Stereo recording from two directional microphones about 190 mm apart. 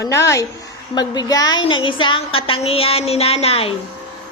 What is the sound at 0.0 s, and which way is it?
A woman's voice, 15° left (ahead or behind).